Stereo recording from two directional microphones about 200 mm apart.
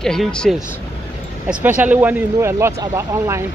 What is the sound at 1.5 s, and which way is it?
Speech, 10° right (ahead or behind).